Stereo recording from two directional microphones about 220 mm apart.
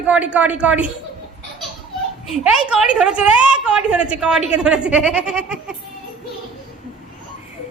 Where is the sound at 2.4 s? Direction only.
5° right (ahead or behind).